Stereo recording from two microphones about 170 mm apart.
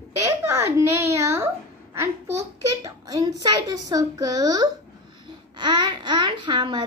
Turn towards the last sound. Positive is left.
turn(degrees=-25)  # may be behind; listen again after turning